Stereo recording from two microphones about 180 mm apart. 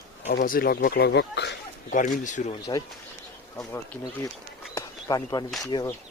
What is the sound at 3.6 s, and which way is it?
Speech, 10° left (ahead or behind).